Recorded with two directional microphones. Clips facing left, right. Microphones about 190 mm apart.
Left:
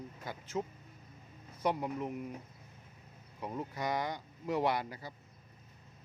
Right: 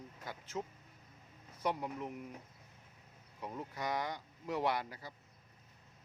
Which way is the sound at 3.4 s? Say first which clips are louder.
Left 3 dB; 15° left (ahead or behind).